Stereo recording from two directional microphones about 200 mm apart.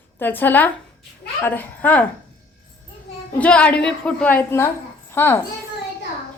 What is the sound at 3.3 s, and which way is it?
A child's voice, 5° left (ahead or behind).